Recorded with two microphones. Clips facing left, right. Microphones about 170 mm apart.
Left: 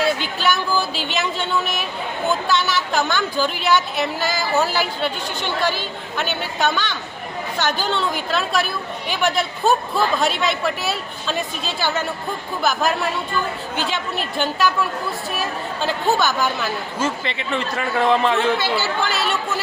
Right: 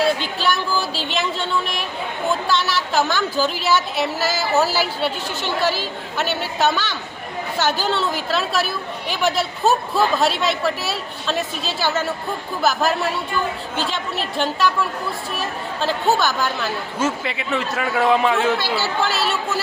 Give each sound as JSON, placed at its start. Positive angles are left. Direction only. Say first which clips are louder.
{"t": 0.3, "sound": "speech", "louder": "left 1 dB", "side_deg": 0}